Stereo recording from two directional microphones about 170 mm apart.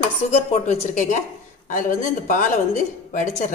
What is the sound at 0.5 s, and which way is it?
Speech, 40° left (ahead or behind).